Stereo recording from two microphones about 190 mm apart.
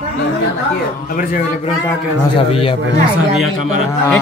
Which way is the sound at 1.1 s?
45° left (ahead or behind).